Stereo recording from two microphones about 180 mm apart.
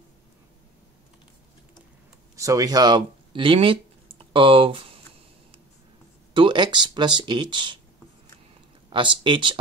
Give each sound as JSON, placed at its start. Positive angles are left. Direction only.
{"t": 2.3, "sound": "speech", "side_deg": -20}
{"t": 6.3, "sound": "speech", "side_deg": -25}
{"t": 8.9, "sound": "speech", "side_deg": -25}